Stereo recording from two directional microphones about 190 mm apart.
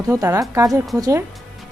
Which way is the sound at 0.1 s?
20° right (ahead or behind).